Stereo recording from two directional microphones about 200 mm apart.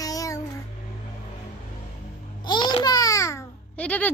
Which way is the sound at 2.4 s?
20° left (ahead or behind).